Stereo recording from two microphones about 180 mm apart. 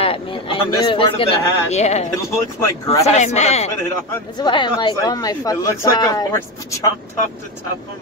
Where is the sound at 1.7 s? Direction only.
40° left (ahead or behind).